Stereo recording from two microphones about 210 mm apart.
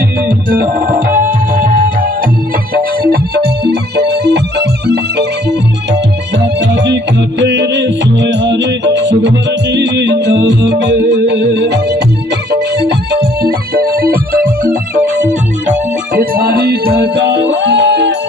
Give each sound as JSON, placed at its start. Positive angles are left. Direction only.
{"t": 0.3, "sound": "music", "side_deg": -40}
{"t": 16.2, "sound": "music", "side_deg": -45}